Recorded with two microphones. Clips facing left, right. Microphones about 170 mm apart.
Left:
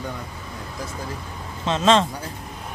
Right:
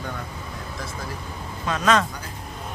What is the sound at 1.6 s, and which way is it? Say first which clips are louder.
Speech: left 3 dB; 25° left (ahead or behind).